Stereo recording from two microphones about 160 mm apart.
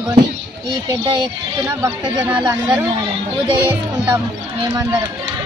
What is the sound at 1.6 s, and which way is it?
Speech, 20° right (ahead or behind).